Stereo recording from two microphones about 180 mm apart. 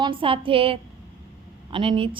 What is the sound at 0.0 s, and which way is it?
A woman's voice, 30° right (ahead or behind).